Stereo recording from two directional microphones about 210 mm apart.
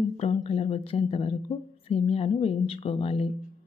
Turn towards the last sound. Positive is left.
turn(degrees=25)  # may be behind; listen again after turning